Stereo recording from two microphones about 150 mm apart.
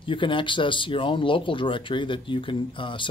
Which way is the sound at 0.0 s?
35° left (ahead or behind).